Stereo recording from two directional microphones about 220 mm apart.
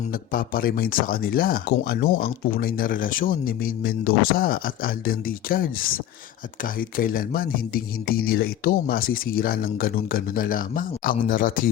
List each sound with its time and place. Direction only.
0.1 s speech: 40° left (ahead or behind)